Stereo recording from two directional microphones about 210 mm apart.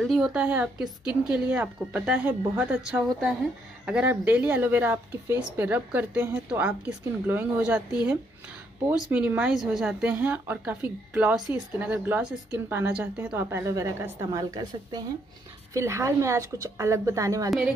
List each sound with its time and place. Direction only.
0.0 s a woman's voice: centre (ahead or behind); by 17.5 s 15° right (ahead or behind)